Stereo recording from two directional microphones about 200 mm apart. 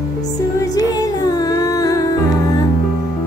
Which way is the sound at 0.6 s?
20° left (ahead or behind).